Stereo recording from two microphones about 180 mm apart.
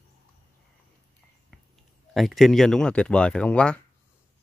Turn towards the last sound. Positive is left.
turn(degrees=5)  # may be behind; listen again after turning